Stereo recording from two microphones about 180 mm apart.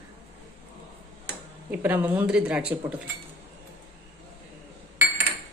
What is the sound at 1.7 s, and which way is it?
Speech, 10° right (ahead or behind).